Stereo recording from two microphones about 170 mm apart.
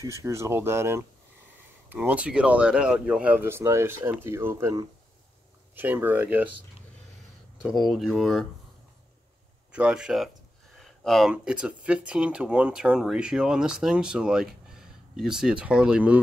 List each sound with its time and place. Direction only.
0.0 s speech: 20° right (ahead or behind)
7.6 s speech: centre (ahead or behind)
9.7 s speech: 5° right (ahead or behind)